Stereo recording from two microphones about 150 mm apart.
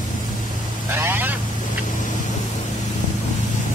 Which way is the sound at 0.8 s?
15° right (ahead or behind).